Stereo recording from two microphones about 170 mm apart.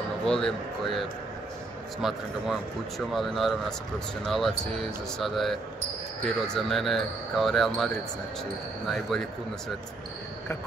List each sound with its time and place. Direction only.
0.2 s speech: 5° left (ahead or behind)